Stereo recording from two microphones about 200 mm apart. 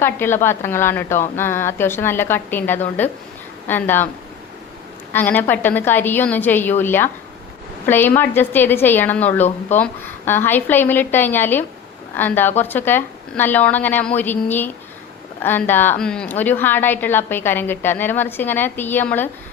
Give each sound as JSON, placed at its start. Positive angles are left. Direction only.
{"t": 0.0, "sound": "a woman's voice", "side_deg": 10}
{"t": 5.1, "sound": "a woman's voice", "side_deg": 10}